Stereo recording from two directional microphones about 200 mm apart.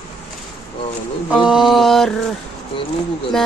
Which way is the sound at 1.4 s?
Centre (ahead or behind).